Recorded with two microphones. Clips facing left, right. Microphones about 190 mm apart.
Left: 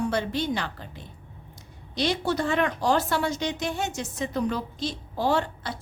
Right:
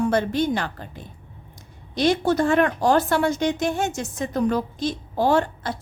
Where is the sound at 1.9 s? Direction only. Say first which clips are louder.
Right 6 dB; 50° right (ahead or behind).